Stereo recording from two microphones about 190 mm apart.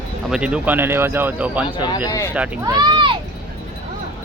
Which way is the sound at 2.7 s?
20° right (ahead or behind).